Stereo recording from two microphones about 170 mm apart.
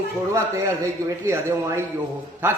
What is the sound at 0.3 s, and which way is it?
A man's voice, 20° right (ahead or behind).